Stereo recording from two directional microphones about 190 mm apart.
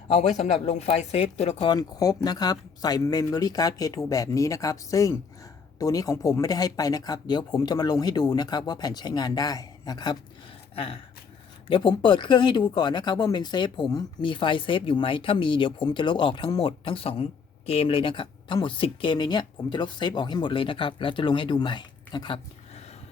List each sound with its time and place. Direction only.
0.1 s speech: 35° left (ahead or behind)
1.7 s speech: 20° left (ahead or behind)